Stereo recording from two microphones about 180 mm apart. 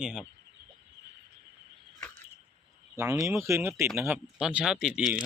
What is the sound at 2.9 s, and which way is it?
Speech, 15° right (ahead or behind).